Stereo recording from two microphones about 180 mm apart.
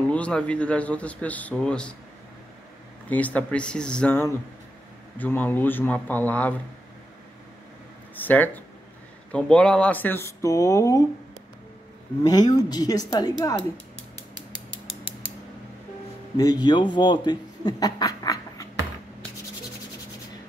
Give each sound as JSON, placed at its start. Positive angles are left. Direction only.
{"t": 0.1, "sound": "a man's voice", "side_deg": 5}
{"t": 3.1, "sound": "a man's voice", "side_deg": 10}
{"t": 8.3, "sound": "a man's voice", "side_deg": 10}
{"t": 12.2, "sound": "speech", "side_deg": 20}
{"t": 16.3, "sound": "speech", "side_deg": 20}